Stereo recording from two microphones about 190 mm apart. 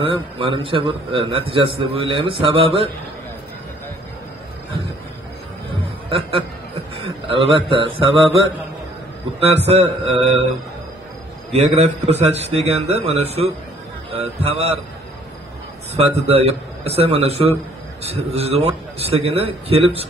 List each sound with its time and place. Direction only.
0.0 s a man's voice: 25° right (ahead or behind)
6.0 s a man's voice: 30° right (ahead or behind)
9.7 s a man's voice: 30° right (ahead or behind)
11.5 s a man's voice: 35° right (ahead or behind)
16.3 s a man's voice: 30° right (ahead or behind)